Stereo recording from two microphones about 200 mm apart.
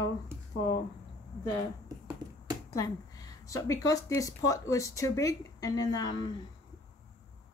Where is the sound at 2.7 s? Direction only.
20° left (ahead or behind).